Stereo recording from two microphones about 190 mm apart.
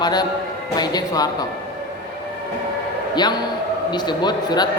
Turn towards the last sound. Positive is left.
turn(degrees=20)  # may be behind; listen again after turning